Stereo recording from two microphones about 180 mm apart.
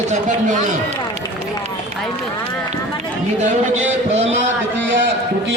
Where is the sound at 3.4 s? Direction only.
40° right (ahead or behind).